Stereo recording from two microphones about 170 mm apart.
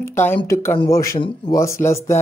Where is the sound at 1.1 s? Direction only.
30° left (ahead or behind).